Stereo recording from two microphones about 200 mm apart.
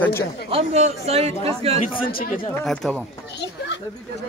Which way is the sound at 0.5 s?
30° right (ahead or behind).